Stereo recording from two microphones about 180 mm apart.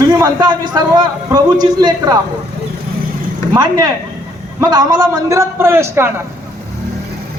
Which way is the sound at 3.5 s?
20° right (ahead or behind).